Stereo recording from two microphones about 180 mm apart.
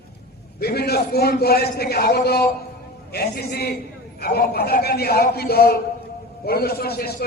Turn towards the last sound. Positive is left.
turn(degrees=60)  # may be behind; listen again after turning